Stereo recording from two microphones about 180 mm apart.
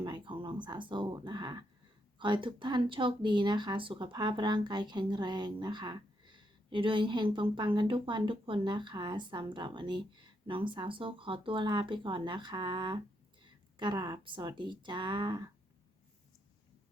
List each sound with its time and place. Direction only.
0.0 s speech: 25° right (ahead or behind)